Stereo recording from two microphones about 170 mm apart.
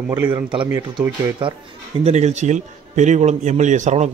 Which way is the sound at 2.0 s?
40° right (ahead or behind).